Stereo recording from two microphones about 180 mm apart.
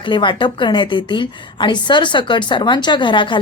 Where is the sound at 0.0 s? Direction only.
25° left (ahead or behind).